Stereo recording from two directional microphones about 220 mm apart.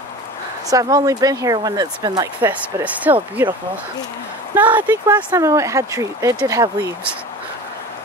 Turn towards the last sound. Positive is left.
turn(degrees=-15)  # may be behind; listen again after turning